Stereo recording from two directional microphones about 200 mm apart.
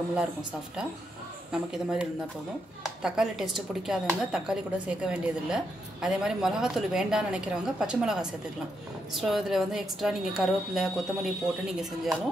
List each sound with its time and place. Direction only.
0.1 s speech: 5° right (ahead or behind)